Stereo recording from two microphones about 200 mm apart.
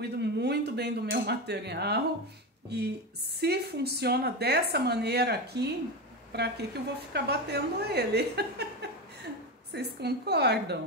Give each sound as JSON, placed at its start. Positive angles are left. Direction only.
{"t": 0.0, "sound": "cutlery", "side_deg": -55}
{"t": 2.7, "sound": "a woman's voice", "side_deg": -55}